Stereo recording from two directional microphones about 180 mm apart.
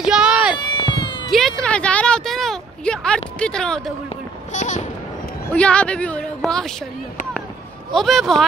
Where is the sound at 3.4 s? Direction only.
5° left (ahead or behind).